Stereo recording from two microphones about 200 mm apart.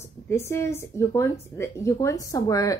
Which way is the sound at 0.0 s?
15° left (ahead or behind).